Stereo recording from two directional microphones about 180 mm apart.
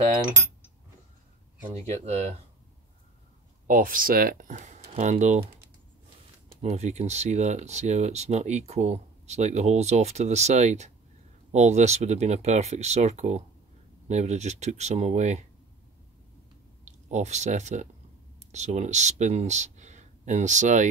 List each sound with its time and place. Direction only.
1.7 s speech: 35° right (ahead or behind)
3.6 s speech: 50° right (ahead or behind)
6.6 s speech: 40° right (ahead or behind)
16.8 s speech: 40° right (ahead or behind)